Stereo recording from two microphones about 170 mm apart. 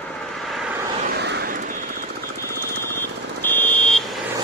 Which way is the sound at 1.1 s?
85° right.